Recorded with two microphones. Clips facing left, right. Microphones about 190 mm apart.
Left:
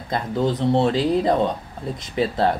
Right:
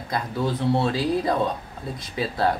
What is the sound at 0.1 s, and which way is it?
Speech, 20° left (ahead or behind).